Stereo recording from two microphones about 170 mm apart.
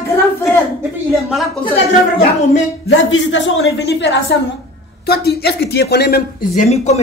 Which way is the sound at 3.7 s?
90° left.